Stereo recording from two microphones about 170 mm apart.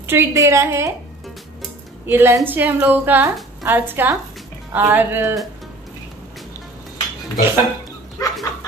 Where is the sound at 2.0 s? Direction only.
15° right (ahead or behind).